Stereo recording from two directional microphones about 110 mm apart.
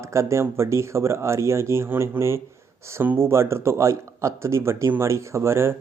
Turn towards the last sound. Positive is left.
turn(degrees=-25)  # may be behind; listen again after turning